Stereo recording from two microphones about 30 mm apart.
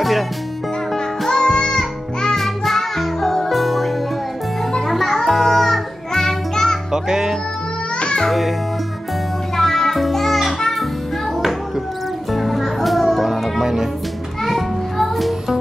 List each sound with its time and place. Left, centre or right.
1.3 s music: left
2.2 s music: centre
6.9 s music: centre
8.3 s a child's voice: centre
9.6 s music: centre
12.3 s music: centre